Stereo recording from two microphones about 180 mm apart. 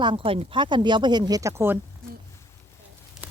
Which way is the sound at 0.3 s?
30° right (ahead or behind).